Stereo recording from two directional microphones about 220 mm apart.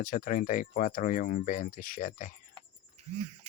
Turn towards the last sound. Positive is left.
turn(degrees=-30)  # may be behind; listen again after turning